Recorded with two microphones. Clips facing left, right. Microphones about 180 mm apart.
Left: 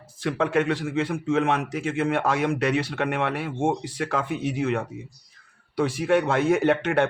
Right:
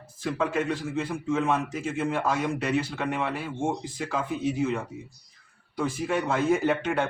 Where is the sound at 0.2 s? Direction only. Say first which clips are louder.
Left 4 dB; 70° left (ahead or behind).